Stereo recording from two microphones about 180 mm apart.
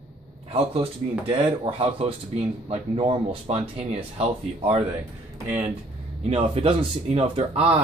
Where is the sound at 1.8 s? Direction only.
35° right (ahead or behind).